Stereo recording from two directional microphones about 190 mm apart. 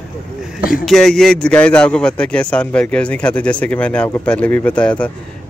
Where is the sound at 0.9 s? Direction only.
5° left (ahead or behind).